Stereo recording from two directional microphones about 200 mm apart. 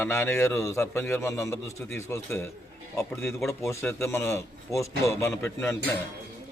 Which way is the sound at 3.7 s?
15° left (ahead or behind).